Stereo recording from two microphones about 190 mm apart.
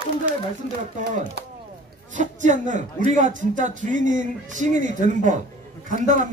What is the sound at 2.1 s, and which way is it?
A man's voice, 40° right (ahead or behind).